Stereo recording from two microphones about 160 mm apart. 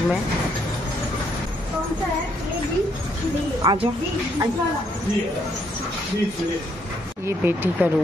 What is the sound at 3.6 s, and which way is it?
Speech, 30° right (ahead or behind).